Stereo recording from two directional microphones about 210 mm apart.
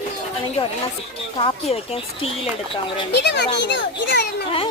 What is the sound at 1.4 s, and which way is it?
Speech, 25° left (ahead or behind).